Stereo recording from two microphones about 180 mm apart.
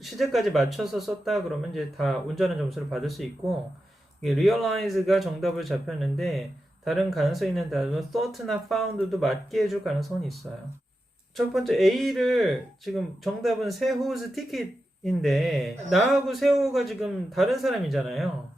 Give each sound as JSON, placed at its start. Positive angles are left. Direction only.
{"t": 0.0, "sound": "speech", "side_deg": 0}
{"t": 11.3, "sound": "speech", "side_deg": 0}